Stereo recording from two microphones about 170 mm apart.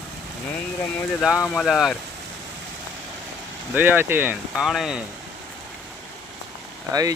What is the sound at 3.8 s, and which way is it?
Speech, 10° right (ahead or behind).